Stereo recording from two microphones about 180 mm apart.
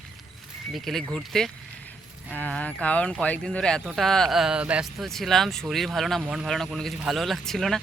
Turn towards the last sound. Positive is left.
turn(degrees=0)  # may be behind; listen again after turning